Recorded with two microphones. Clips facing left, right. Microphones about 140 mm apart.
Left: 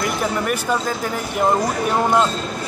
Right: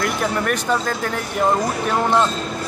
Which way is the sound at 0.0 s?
5° left (ahead or behind).